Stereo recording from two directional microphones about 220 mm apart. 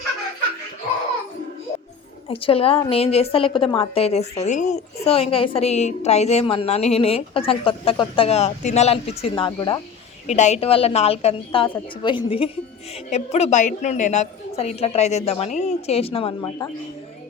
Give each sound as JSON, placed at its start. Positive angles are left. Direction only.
{"t": 2.2, "sound": "a woman's voice", "side_deg": 25}
{"t": 10.2, "sound": "a woman's voice", "side_deg": 30}